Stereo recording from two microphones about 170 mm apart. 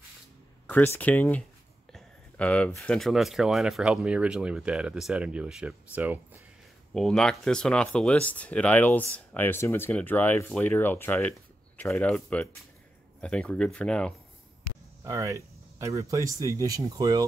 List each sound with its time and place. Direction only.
0.7 s speech: 10° left (ahead or behind); by 6.4 s 10° right (ahead or behind)
6.9 s speech: centre (ahead or behind)
15.0 s speech: 20° right (ahead or behind)